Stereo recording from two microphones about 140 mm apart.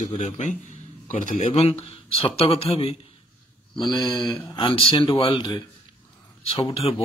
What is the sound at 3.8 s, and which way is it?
Speech, 30° left (ahead or behind).